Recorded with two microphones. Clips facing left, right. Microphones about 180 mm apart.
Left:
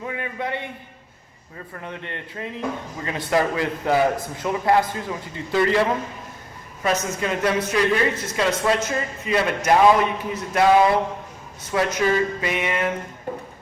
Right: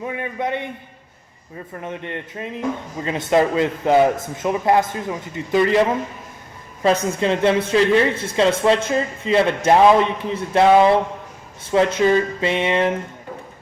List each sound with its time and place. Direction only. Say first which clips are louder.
0.0 s speech: right 4 dB; 20° right (ahead or behind)
1.8 s speech: right 5 dB; 20° right (ahead or behind)